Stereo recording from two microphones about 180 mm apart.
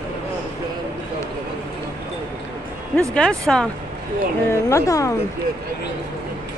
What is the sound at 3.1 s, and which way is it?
Speech, 5° left (ahead or behind).